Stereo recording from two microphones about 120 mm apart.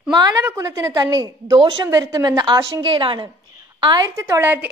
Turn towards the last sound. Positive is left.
turn(degrees=-20)  # may be behind; listen again after turning